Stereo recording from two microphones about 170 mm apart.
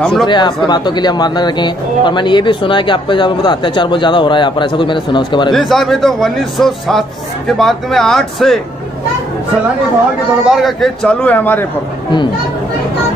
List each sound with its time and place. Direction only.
0.0 s a man's voice: centre (ahead or behind)
0.3 s speech: 25° left (ahead or behind)
5.5 s a man's voice: centre (ahead or behind)
10.4 s a man's voice: centre (ahead or behind)